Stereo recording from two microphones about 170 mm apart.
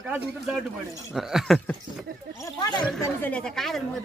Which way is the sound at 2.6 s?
25° left (ahead or behind).